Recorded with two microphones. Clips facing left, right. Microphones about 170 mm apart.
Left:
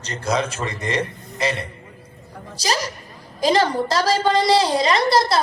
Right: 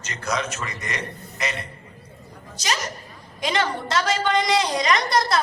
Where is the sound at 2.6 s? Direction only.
35° left (ahead or behind).